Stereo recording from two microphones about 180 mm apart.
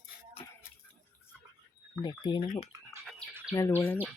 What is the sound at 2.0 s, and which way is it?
Speech, 25° left (ahead or behind).